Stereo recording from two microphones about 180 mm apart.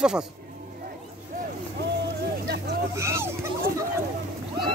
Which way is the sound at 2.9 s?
15° right (ahead or behind).